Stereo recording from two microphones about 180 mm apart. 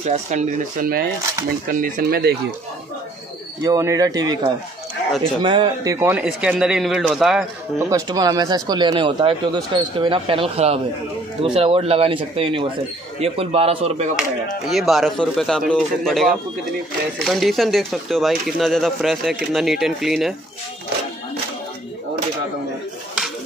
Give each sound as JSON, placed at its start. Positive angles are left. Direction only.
{"t": 0.0, "sound": "speech", "side_deg": -40}
{"t": 3.6, "sound": "speech", "side_deg": -20}
{"t": 5.9, "sound": "speech", "side_deg": -10}
{"t": 7.9, "sound": "speech", "side_deg": -20}
{"t": 14.7, "sound": "speech", "side_deg": 0}